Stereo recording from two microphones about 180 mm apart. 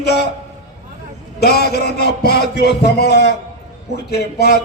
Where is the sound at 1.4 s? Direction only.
65° left (ahead or behind).